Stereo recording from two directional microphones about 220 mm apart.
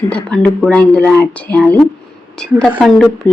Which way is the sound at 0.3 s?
5° left (ahead or behind).